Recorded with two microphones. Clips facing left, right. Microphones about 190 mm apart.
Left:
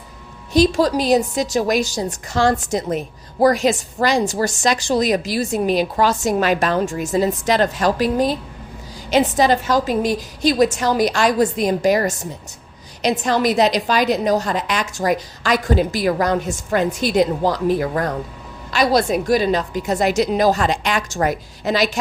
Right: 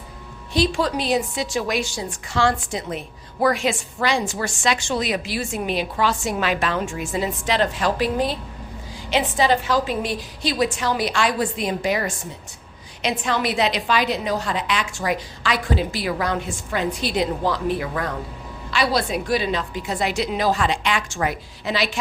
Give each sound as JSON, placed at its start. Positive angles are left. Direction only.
{"t": 0.5, "sound": "a woman's voice", "side_deg": 40}